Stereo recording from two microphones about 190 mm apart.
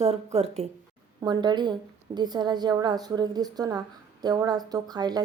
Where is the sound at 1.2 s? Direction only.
25° right (ahead or behind).